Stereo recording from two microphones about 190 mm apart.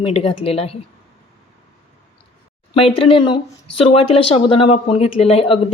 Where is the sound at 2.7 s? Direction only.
30° left (ahead or behind).